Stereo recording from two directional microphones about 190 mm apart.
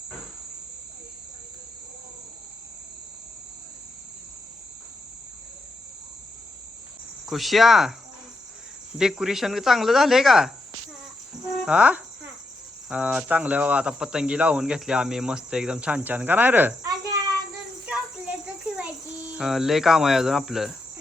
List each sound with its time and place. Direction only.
7.3 s speech: centre (ahead or behind)
9.0 s speech: 5° right (ahead or behind)
11.6 s cricket: 5° right (ahead or behind)
12.9 s speech: 5° right (ahead or behind)
16.8 s insect: 20° right (ahead or behind)
18.8 s a child's voice: 5° right (ahead or behind)